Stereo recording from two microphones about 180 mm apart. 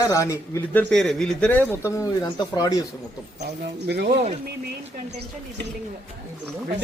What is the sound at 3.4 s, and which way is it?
Speech, 65° right (ahead or behind).